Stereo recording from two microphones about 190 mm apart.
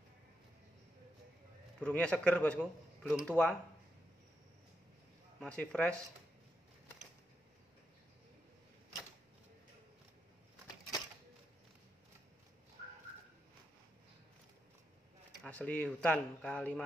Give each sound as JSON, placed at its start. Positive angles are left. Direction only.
{"t": 1.8, "sound": "speech", "side_deg": 5}
{"t": 5.4, "sound": "speech", "side_deg": 5}
{"t": 15.4, "sound": "speech", "side_deg": 5}